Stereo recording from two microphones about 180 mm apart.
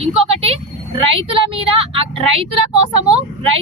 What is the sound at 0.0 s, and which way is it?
A woman's voice, 35° right (ahead or behind).